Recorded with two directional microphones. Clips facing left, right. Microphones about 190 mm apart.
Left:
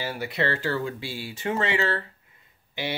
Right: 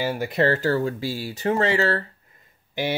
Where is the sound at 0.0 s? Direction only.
45° right (ahead or behind).